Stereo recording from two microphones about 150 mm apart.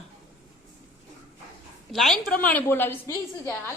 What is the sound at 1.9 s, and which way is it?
Speech, centre (ahead or behind).